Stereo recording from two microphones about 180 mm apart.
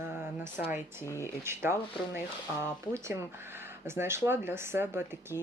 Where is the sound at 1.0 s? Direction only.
15° left (ahead or behind).